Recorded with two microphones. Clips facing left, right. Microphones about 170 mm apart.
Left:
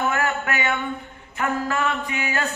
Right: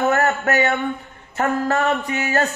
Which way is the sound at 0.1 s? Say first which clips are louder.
Right 6 dB; 40° right (ahead or behind).